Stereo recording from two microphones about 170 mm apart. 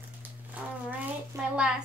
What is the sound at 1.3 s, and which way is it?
Speech, 20° right (ahead or behind).